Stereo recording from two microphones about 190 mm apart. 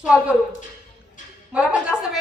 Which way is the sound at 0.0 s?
5° right (ahead or behind).